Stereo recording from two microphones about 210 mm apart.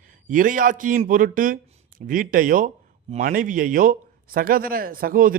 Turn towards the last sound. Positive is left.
turn(degrees=-40)  # may be behind; listen again after turning